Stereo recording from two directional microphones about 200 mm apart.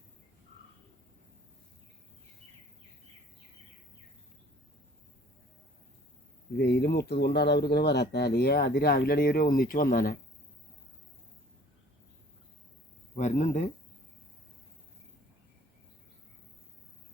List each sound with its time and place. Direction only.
6.6 s speech: 55° left (ahead or behind)
13.1 s speech: 35° left (ahead or behind)